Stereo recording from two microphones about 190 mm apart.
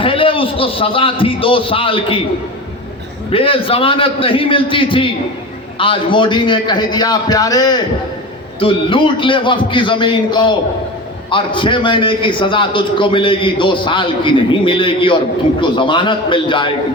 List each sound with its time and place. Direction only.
0.0 s a man's voice: 30° left (ahead or behind)
3.3 s a man's voice: 30° left (ahead or behind)